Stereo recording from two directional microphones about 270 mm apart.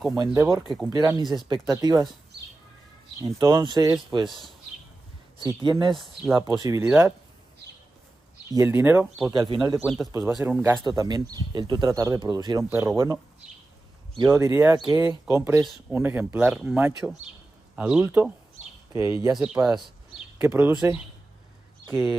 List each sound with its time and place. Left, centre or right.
0.2 s speech: centre
3.2 s speech: centre
5.5 s speech: centre
8.5 s speech: centre
21.8 s speech: centre